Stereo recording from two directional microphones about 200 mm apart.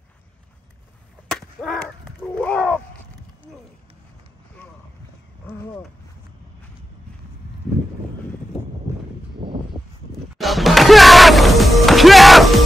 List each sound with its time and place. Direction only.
1.3 s gunshot: 5° left (ahead or behind)
9.4 s a sound: 25° right (ahead or behind)
10.3 s music: centre (ahead or behind)